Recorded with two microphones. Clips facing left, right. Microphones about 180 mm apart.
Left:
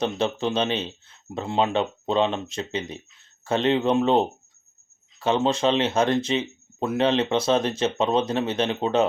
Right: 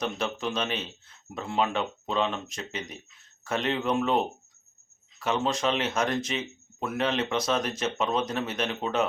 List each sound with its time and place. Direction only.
0.0 s speech: 30° left (ahead or behind)